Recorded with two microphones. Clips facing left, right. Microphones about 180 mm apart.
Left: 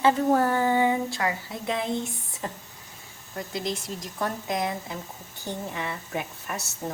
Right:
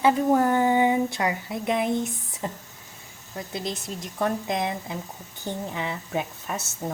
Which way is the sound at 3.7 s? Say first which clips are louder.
Left 1 dB; 20° right (ahead or behind).